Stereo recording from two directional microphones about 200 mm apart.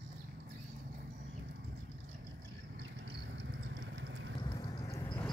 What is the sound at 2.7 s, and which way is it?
Vehicle, 60° right (ahead or behind).